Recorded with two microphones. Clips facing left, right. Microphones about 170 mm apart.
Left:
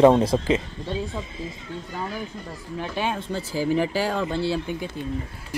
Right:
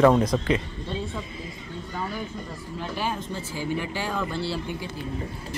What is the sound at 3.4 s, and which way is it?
Speech, 35° left (ahead or behind).